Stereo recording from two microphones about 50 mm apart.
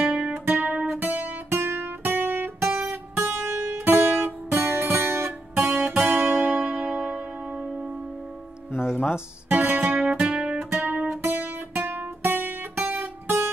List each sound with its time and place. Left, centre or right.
0.0 s music: right
0.3 s music: right
1.6 s guitar: right
3.3 s music: right
6.0 s music: right
6.4 s music: right
8.7 s music: left
9.5 s guitar: right
10.1 s music: centre
10.6 s music: right
12.9 s guitar: right